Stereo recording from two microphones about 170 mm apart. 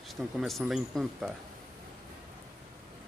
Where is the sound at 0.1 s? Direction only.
Centre (ahead or behind).